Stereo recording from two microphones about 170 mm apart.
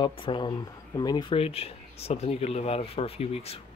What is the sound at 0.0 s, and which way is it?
Speech, 30° left (ahead or behind).